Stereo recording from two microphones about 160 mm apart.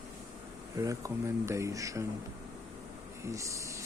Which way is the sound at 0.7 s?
20° right (ahead or behind).